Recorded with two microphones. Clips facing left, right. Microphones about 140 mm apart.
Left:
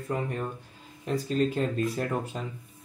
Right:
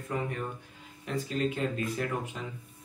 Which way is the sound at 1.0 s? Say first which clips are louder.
Left 4 dB; 35° left (ahead or behind).